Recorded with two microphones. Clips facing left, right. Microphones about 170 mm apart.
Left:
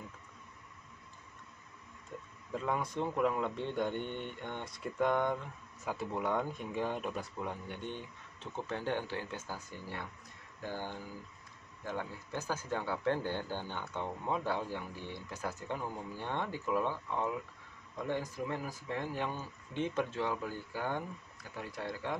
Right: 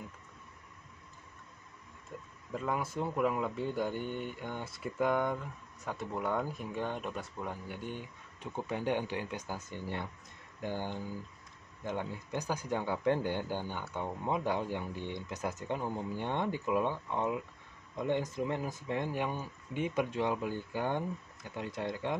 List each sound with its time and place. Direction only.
2.5 s speech: centre (ahead or behind); by 22.1 s 20° right (ahead or behind)